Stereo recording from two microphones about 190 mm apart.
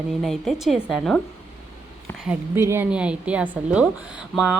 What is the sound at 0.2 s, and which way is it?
A woman's voice, centre (ahead or behind).